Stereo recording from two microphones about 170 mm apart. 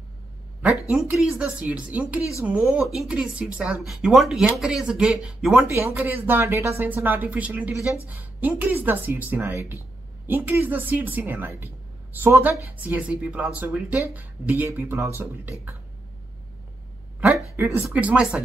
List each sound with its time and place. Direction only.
0.8 s speech: 5° right (ahead or behind)
17.6 s speech: 15° right (ahead or behind)